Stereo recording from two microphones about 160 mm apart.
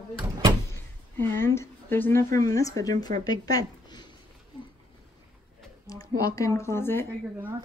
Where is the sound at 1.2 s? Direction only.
15° left (ahead or behind).